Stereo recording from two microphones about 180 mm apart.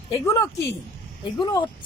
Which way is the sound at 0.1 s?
15° left (ahead or behind).